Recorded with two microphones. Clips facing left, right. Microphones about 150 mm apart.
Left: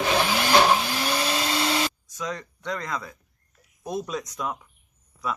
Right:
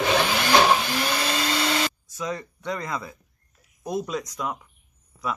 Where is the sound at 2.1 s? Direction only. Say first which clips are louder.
Right 2 dB; 5° right (ahead or behind).